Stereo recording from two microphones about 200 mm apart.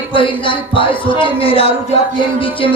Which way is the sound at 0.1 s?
25° left (ahead or behind).